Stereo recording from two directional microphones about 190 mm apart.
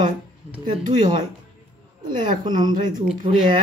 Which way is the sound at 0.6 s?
25° right (ahead or behind).